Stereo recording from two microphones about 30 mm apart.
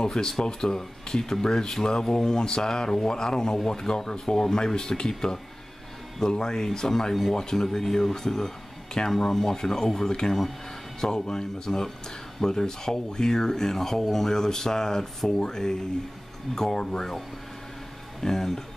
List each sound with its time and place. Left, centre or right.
0.0 s speech: left
2.3 s speech: left
18.2 s speech: centre